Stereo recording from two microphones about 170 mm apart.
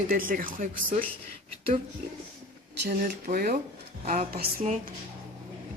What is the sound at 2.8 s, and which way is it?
A woman's voice, 60° right (ahead or behind).